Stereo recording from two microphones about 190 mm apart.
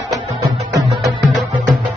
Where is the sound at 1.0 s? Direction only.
Centre (ahead or behind).